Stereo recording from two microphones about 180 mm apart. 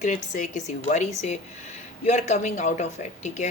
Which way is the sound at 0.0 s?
45° left (ahead or behind).